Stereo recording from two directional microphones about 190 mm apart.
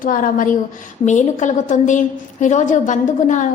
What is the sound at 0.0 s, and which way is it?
A woman's voice, 45° left (ahead or behind).